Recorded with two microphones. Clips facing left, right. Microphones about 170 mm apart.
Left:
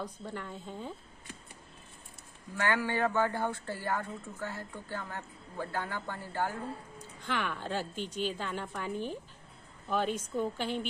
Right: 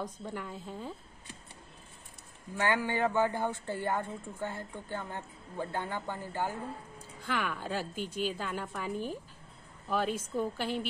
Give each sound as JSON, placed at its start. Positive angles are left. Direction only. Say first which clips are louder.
{"t": 0.0, "sound": "a woman's voice", "louder": "right 1 dB", "side_deg": -10}
{"t": 2.5, "sound": "a man's voice", "louder": "right 1 dB", "side_deg": -15}
{"t": 7.0, "sound": "a woman's voice", "louder": "right 1 dB", "side_deg": -5}